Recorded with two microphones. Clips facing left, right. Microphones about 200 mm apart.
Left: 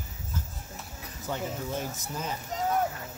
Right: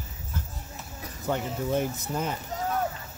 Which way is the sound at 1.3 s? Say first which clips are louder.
Right 5 dB; 60° right (ahead or behind).